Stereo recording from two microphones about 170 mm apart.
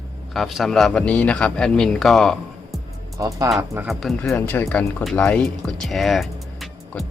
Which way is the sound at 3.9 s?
Centre (ahead or behind).